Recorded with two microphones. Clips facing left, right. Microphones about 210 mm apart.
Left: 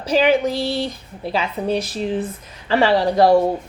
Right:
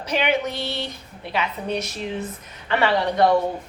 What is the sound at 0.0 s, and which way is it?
Speech, 30° left (ahead or behind).